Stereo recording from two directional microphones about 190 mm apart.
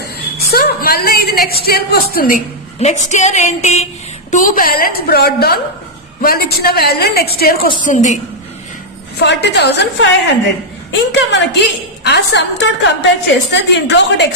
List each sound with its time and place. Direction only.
0.0 s a woman's voice: 55° left (ahead or behind)
2.8 s a woman's voice: 40° left (ahead or behind)
7.8 s a woman's voice: 40° left (ahead or behind)
9.2 s a woman's voice: 65° left (ahead or behind)